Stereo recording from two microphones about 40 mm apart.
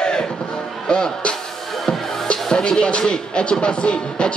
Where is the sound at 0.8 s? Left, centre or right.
Centre.